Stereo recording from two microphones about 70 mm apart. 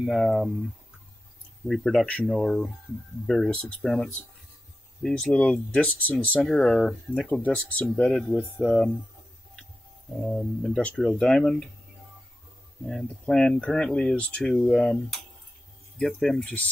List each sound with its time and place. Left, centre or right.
0.0 s speech: centre
1.7 s speech: centre; by 6.1 s left
6.4 s speech: centre
7.4 s speech: left
7.9 s speech: centre
10.2 s speech: centre
10.8 s speech: centre
12.8 s speech: centre